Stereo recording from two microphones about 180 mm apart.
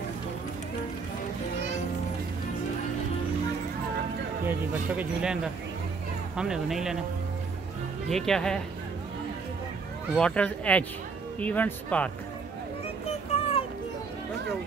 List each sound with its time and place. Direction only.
4.5 s speech: 5° right (ahead or behind)
8.1 s speech: centre (ahead or behind)
10.1 s speech: 5° left (ahead or behind)
12.8 s children playing: 35° left (ahead or behind)